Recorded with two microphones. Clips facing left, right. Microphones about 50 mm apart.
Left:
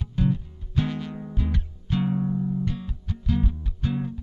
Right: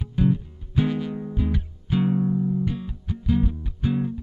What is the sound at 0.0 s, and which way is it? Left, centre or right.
Music, centre.